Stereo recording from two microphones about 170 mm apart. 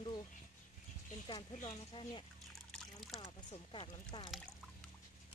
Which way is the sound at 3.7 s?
30° left (ahead or behind).